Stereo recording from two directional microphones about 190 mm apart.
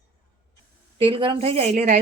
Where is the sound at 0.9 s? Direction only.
30° right (ahead or behind).